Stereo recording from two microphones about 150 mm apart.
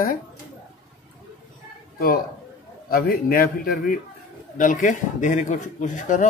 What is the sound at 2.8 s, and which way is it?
A man's voice, 85° left.